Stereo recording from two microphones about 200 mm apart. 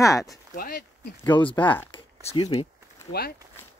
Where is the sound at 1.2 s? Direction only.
25° left (ahead or behind).